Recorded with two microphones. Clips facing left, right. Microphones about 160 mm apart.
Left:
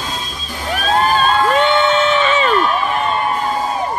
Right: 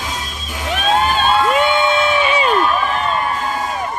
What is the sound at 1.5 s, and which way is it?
Crowd, 10° right (ahead or behind).